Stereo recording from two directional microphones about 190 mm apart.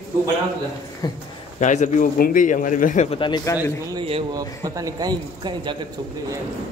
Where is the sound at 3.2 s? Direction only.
25° left (ahead or behind).